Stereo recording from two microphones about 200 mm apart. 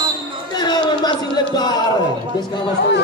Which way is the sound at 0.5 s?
20° left (ahead or behind).